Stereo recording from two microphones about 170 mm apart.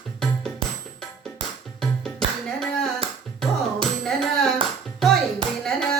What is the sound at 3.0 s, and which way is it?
Music, 35° right (ahead or behind).